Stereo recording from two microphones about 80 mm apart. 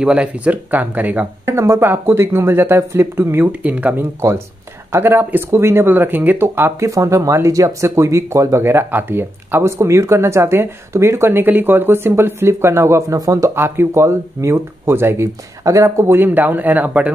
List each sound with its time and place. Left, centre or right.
0.0 s speech: centre; by 6.9 s right
6.9 s speech: right
13.6 s speech: right